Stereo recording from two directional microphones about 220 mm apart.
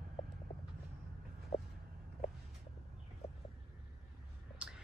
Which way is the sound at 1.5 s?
25° left (ahead or behind).